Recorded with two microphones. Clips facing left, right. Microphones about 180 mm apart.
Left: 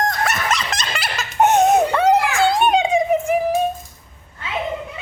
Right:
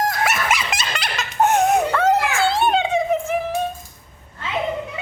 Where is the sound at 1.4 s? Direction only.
20° left (ahead or behind).